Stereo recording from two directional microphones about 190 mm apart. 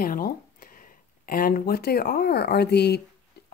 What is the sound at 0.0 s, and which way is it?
Speech, 50° left (ahead or behind).